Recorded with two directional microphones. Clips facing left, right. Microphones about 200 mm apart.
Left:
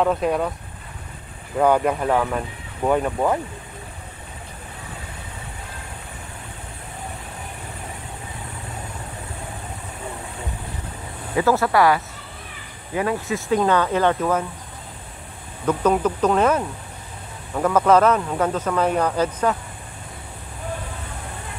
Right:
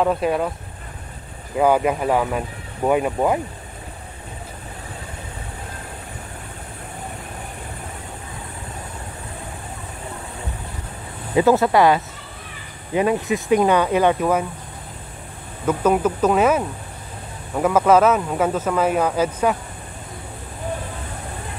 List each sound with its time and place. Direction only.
0.0 s speech: 5° right (ahead or behind)
1.6 s speech: 5° right (ahead or behind)
11.3 s speech: 20° right (ahead or behind)
15.6 s speech: 5° right (ahead or behind)